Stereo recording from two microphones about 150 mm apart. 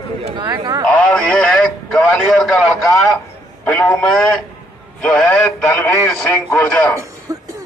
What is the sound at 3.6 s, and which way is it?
A man's voice, 15° left (ahead or behind).